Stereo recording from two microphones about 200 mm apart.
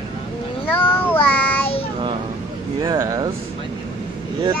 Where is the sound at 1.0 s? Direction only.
10° left (ahead or behind).